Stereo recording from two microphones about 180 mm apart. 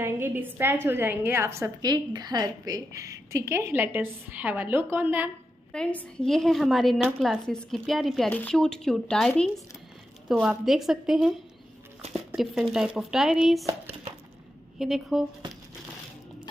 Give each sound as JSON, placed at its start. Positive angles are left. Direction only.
{"t": 0.0, "sound": "a woman's voice", "side_deg": -10}
{"t": 5.7, "sound": "a woman's voice", "side_deg": 5}
{"t": 14.8, "sound": "a woman's voice", "side_deg": 0}